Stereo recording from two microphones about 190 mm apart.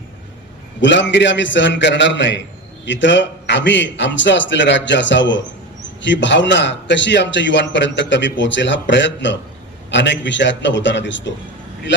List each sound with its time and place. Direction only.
0.8 s a man's voice: 70° left (ahead or behind)